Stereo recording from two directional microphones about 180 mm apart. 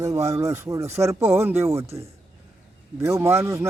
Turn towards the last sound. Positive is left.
turn(degrees=-15)  # may be behind; listen again after turning